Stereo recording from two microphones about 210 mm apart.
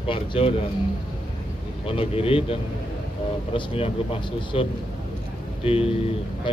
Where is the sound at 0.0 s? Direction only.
25° left (ahead or behind).